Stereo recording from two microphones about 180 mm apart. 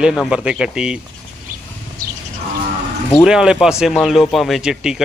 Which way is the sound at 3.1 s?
5° right (ahead or behind).